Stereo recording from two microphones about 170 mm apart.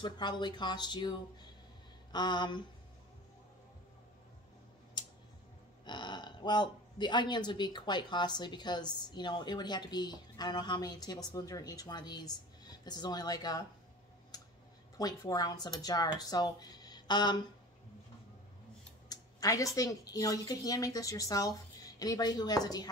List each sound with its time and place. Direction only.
0.0 s speech: 25° left (ahead or behind)
5.0 s tick: 25° left (ahead or behind)
5.9 s speech: 25° left (ahead or behind)
14.3 s clicking: 25° left (ahead or behind)
15.0 s speech: 25° left (ahead or behind)
19.0 s speech: 20° left (ahead or behind)